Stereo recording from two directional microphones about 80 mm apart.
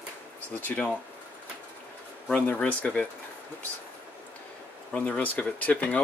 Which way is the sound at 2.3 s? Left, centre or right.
Centre.